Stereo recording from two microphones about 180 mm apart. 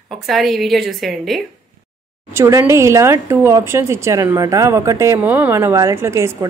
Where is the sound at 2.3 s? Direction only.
15° right (ahead or behind).